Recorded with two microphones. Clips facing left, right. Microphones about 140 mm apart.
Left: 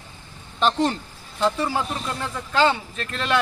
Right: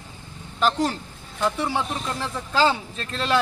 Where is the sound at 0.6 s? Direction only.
5° right (ahead or behind).